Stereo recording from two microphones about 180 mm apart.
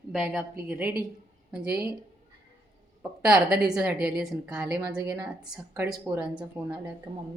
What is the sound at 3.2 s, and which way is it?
A woman's voice, 5° right (ahead or behind).